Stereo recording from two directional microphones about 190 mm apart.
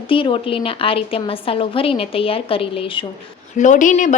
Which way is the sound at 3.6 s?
40° left (ahead or behind).